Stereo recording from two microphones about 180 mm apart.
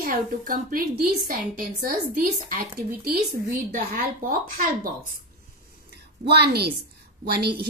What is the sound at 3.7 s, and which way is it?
A woman's voice, 50° right (ahead or behind).